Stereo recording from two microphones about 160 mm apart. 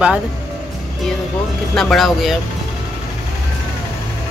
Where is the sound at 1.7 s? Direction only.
5° left (ahead or behind).